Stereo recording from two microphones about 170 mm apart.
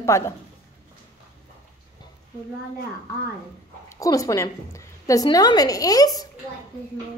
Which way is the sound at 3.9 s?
20° left (ahead or behind).